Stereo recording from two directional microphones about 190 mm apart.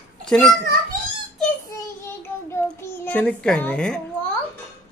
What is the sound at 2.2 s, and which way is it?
Child singing, 10° left (ahead or behind).